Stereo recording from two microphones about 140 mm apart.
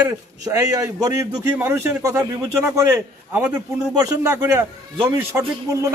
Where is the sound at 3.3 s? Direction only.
10° right (ahead or behind).